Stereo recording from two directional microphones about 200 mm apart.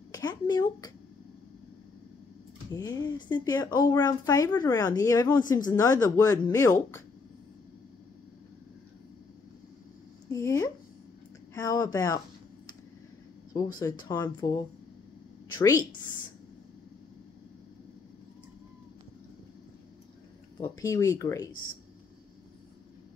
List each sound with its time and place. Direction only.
0.1 s speech: 20° left (ahead or behind)
2.7 s speech: 20° left (ahead or behind)
10.3 s speech: 15° left (ahead or behind)
13.5 s speech: 15° left (ahead or behind)
20.6 s speech: 15° left (ahead or behind)